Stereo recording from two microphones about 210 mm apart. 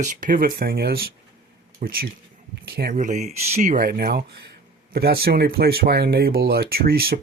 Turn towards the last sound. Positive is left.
turn(degrees=-45)  # may be behind; listen again after turning